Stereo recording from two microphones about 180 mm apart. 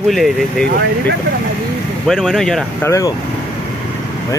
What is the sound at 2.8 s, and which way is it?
Speech, 15° left (ahead or behind).